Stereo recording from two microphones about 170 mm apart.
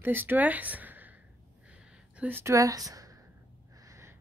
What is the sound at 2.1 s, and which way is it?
Speech, 10° right (ahead or behind).